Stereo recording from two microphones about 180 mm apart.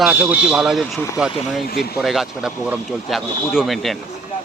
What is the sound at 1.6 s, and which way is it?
Speech, 60° left (ahead or behind).